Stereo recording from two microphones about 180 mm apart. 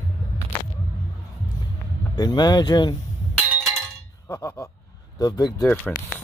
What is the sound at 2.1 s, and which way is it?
Speech, 25° left (ahead or behind).